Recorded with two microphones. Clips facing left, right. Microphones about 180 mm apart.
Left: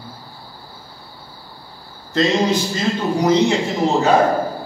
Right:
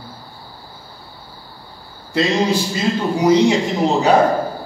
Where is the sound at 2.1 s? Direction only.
10° right (ahead or behind).